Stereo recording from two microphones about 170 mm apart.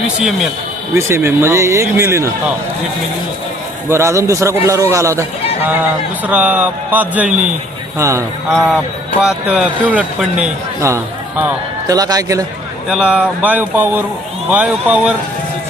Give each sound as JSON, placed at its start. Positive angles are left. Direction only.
{"t": 0.3, "sound": "speech", "side_deg": 0}
{"t": 0.9, "sound": "a man's voice", "side_deg": -15}
{"t": 3.8, "sound": "a man's voice", "side_deg": -15}
{"t": 8.4, "sound": "a man's voice", "side_deg": 0}
{"t": 12.9, "sound": "a man's voice", "side_deg": -5}